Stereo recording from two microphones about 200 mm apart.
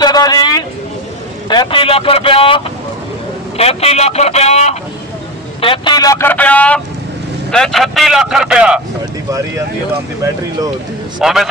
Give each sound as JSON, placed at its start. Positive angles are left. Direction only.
{"t": 0.0, "sound": "a sound", "side_deg": 20}
{"t": 1.5, "sound": "a man's voice", "side_deg": 25}
{"t": 11.1, "sound": "speech", "side_deg": 0}